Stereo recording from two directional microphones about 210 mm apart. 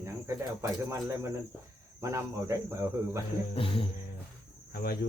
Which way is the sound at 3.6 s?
25° left (ahead or behind).